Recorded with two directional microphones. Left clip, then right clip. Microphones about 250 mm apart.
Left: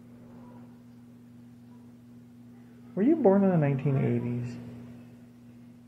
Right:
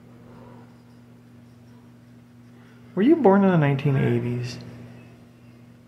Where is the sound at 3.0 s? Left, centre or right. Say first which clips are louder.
Right 6 dB; centre.